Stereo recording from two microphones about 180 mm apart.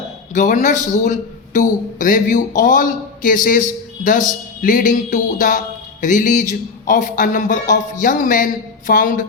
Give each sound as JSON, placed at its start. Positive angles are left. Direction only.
{"t": 0.3, "sound": "speech", "side_deg": 45}